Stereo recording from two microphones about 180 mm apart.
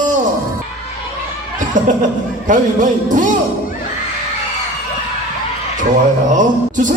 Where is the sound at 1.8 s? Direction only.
45° right (ahead or behind).